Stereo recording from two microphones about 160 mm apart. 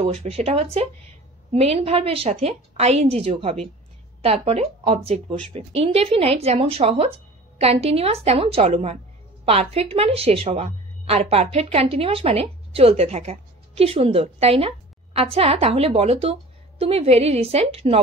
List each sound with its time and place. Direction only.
0.0 s a woman's voice: 40° right (ahead or behind)